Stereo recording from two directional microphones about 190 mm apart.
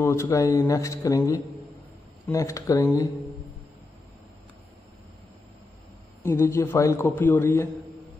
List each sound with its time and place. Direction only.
0.0 s a man's voice: 15° left (ahead or behind)
6.2 s a man's voice: 15° left (ahead or behind)